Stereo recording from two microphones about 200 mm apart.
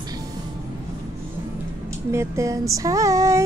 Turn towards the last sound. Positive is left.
turn(degrees=-15)  # may be behind; listen again after turning